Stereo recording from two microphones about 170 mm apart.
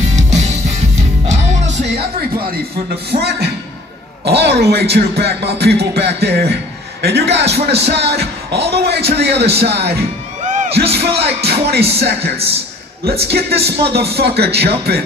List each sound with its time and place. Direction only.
0.1 s music: 45° right (ahead or behind)
3.1 s beatboxing: 75° right (ahead or behind)
4.2 s a man's voice: 75° right (ahead or behind)
10.4 s music: 45° right (ahead or behind)
10.7 s speech: 75° right (ahead or behind)
13.3 s speech: 70° right (ahead or behind)